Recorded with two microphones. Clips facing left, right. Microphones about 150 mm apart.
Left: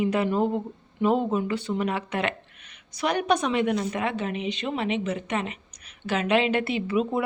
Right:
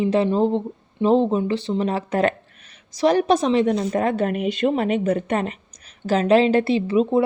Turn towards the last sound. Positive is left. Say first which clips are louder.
# right 7 dB
turn(degrees=-30)  # may be behind; listen again after turning